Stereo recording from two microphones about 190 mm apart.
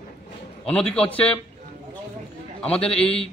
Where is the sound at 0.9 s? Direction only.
5° left (ahead or behind).